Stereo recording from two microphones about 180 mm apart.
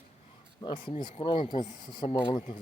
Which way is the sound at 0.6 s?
25° left (ahead or behind).